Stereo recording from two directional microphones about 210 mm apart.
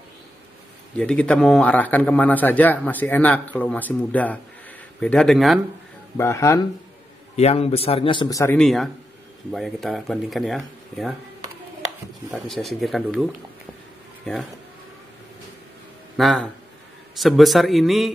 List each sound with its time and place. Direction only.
0.9 s a man's voice: 5° left (ahead or behind)
6.1 s a man's voice: 15° left (ahead or behind)
7.3 s a man's voice: 30° left (ahead or behind)
8.5 s speech: centre (ahead or behind)
12.3 s speech: centre (ahead or behind)
16.2 s speech: centre (ahead or behind)